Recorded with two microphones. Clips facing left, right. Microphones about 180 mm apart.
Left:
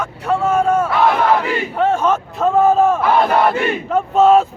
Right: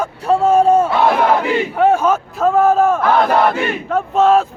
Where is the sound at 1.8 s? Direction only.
10° right (ahead or behind).